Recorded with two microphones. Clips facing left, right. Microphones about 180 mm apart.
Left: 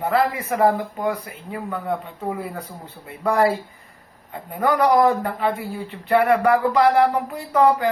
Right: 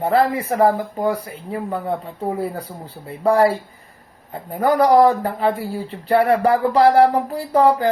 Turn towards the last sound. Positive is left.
turn(degrees=-35)  # may be behind; listen again after turning